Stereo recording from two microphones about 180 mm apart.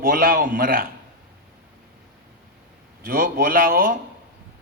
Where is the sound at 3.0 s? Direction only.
50° right (ahead or behind).